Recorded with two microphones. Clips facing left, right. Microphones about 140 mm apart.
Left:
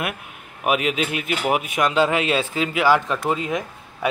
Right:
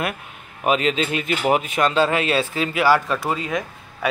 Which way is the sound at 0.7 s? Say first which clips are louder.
Right 1 dB; 10° left (ahead or behind).